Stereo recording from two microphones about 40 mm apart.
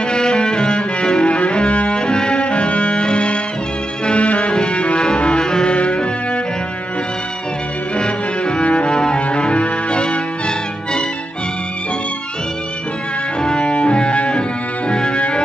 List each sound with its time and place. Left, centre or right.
0.1 s music: left
8.0 s music: left
13.4 s music: left